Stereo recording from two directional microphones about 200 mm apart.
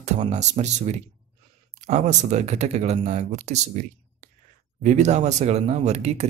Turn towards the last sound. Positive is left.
turn(degrees=-35)  # may be behind; listen again after turning